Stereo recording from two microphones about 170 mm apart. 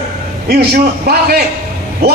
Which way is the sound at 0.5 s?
65° right (ahead or behind).